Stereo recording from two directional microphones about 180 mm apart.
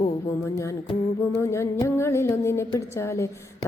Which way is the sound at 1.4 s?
15° left (ahead or behind).